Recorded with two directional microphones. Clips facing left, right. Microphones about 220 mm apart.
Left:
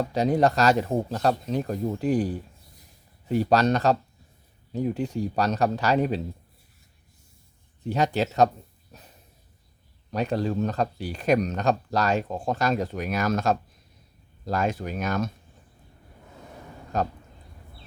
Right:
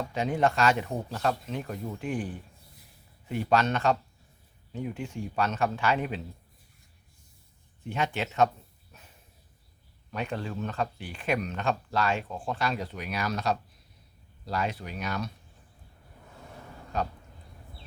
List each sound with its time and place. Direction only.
0.1 s speech: 35° left (ahead or behind)
7.9 s speech: 35° left (ahead or behind)
8.9 s a sound: 35° left (ahead or behind)
10.1 s speech: 40° left (ahead or behind)
16.9 s speech: 45° left (ahead or behind)